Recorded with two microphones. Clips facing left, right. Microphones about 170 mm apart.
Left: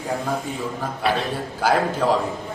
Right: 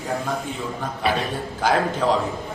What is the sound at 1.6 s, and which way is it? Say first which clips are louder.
Speech: left 1 dB; 5° left (ahead or behind).